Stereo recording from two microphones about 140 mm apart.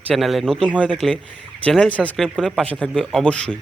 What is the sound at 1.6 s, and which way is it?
A man's voice, 10° left (ahead or behind).